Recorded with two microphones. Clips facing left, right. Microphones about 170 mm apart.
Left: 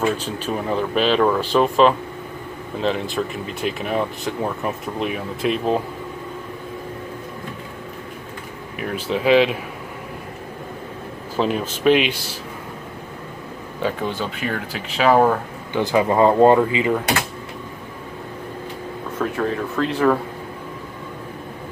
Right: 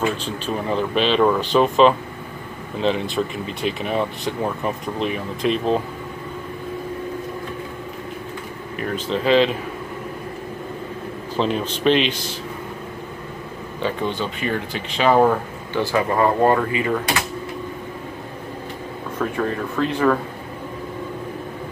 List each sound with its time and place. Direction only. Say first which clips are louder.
0.0 s speech: left 1 dB; 5° left (ahead or behind)
3.2 s speech: right 1 dB; 10° right (ahead or behind)
8.7 s speech: even; 10° left (ahead or behind)
11.3 s speech: even; 5° left (ahead or behind)
13.7 s speech: even; 5° left (ahead or behind)
15.7 s speech: left 2 dB; 20° left (ahead or behind)
19.1 s speech: left 1 dB; 5° left (ahead or behind)